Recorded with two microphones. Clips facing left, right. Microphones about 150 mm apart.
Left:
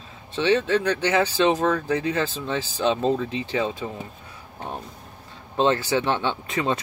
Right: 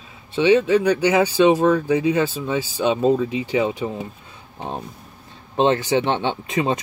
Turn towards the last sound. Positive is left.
turn(degrees=-20)  # may be behind; listen again after turning